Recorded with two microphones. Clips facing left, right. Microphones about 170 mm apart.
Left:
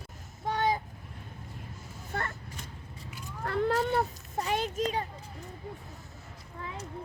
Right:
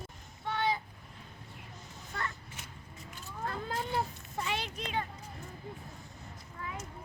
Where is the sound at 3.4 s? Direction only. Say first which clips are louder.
Left 10 dB; 75° left (ahead or behind).